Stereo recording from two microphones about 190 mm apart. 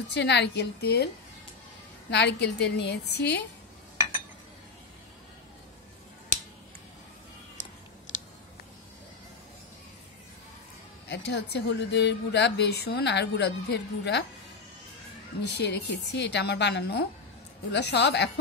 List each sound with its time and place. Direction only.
0.1 s a woman's voice: 65° left (ahead or behind)
11.1 s a woman's voice: 65° left (ahead or behind)
15.4 s a woman's voice: 60° left (ahead or behind)